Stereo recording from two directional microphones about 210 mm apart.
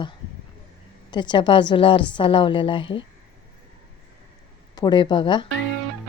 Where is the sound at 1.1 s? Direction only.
20° left (ahead or behind).